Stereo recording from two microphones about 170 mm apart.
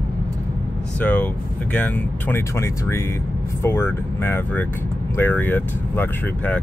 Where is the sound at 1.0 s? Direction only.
10° left (ahead or behind).